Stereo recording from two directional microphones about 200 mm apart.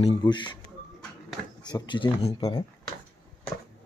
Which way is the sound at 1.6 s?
20° left (ahead or behind).